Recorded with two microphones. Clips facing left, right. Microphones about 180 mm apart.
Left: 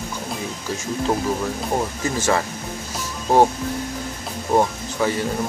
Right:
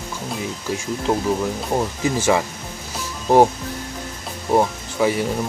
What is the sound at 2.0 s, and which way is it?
Speech, 15° right (ahead or behind).